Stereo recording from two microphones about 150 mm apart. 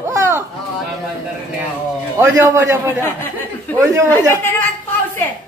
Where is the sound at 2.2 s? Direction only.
20° right (ahead or behind).